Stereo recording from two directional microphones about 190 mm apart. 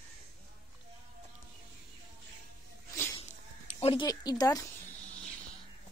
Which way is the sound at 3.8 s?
25° left (ahead or behind).